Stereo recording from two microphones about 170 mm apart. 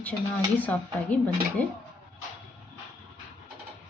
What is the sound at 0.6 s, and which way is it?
A woman's voice, 10° left (ahead or behind).